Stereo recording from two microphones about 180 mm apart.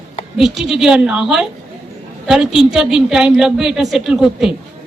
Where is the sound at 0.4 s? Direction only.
Centre (ahead or behind).